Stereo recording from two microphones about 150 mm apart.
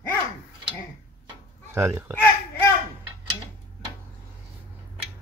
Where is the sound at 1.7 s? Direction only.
15° right (ahead or behind).